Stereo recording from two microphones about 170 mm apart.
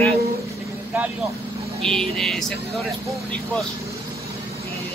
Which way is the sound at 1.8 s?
5° left (ahead or behind).